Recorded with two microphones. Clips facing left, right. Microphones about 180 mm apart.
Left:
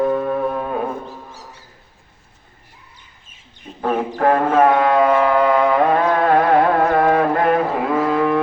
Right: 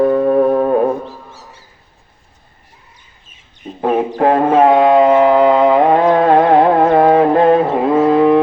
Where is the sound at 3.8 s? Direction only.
20° right (ahead or behind).